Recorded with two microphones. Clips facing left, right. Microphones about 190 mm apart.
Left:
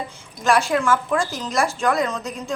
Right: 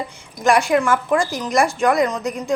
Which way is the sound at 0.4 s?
15° right (ahead or behind).